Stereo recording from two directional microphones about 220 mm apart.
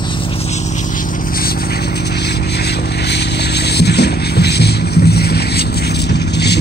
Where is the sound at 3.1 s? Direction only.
50° left (ahead or behind).